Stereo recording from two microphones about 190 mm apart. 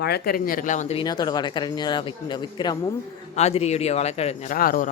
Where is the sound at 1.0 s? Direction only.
20° left (ahead or behind).